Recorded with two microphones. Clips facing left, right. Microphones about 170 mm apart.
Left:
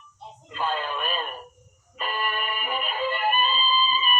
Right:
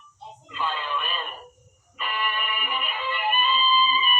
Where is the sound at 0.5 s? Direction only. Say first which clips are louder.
Left 1 dB; 45° left (ahead or behind).